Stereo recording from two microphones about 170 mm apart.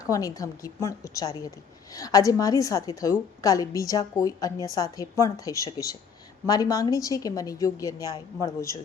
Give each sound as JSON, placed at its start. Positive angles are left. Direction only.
{"t": 0.0, "sound": "a woman's voice", "side_deg": 20}